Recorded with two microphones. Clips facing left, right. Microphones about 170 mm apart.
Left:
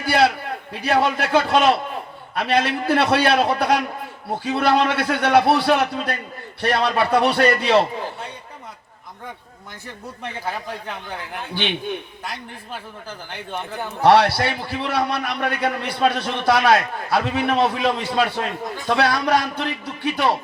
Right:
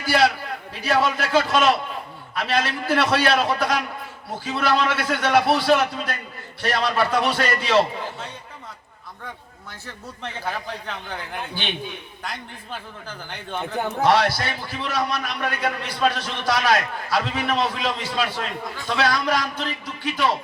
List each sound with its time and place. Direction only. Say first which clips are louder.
0.0 s a man's voice: left 2 dB; 55° left (ahead or behind)
11.5 s a man's voice: left 9 dB; 70° left (ahead or behind)
14.0 s a man's voice: left 5 dB; 65° left (ahead or behind)